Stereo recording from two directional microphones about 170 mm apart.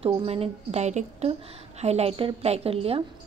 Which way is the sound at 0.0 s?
35° right (ahead or behind).